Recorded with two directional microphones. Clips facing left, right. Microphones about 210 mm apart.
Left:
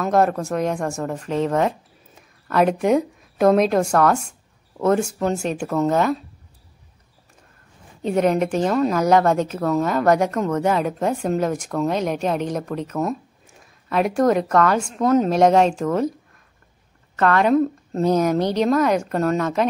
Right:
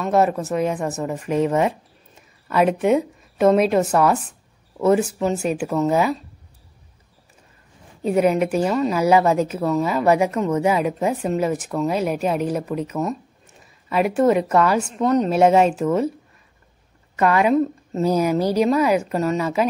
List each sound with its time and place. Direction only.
0.0 s speech: 5° right (ahead or behind)
8.0 s a woman's voice: 5° right (ahead or behind)